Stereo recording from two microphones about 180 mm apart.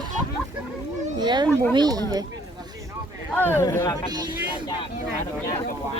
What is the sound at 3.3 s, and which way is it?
Speech, 10° left (ahead or behind).